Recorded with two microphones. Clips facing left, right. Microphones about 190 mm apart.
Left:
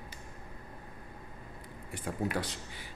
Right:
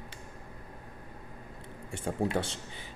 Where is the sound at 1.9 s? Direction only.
25° right (ahead or behind).